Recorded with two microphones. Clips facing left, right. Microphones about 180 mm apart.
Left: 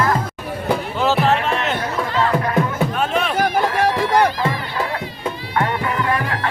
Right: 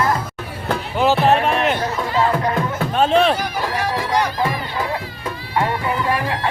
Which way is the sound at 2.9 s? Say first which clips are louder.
Right 5 dB; 30° right (ahead or behind).